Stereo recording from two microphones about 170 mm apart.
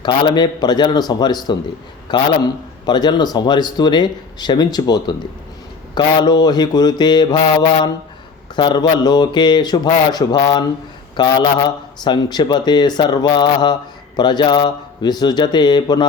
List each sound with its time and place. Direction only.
0.0 s a man's voice: 25° left (ahead or behind)
8.5 s a man's voice: 25° left (ahead or behind)